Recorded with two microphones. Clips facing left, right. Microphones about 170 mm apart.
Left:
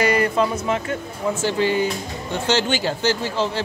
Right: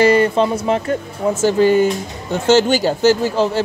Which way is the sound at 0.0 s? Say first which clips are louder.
Right 6 dB; 30° right (ahead or behind).